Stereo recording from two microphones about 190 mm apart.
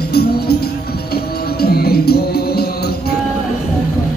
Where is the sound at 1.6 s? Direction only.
55° left (ahead or behind).